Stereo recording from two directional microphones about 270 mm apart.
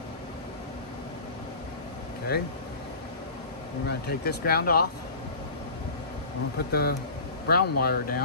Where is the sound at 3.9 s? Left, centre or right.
Left.